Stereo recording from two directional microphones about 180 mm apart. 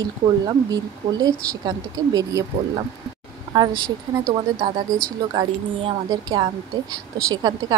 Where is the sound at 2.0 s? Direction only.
20° right (ahead or behind).